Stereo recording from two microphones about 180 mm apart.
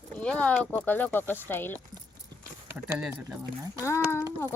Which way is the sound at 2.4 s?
15° right (ahead or behind).